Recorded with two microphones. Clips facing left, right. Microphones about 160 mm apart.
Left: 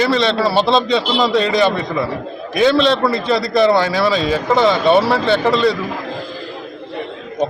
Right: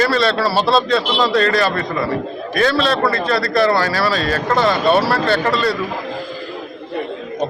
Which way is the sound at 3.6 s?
15° left (ahead or behind).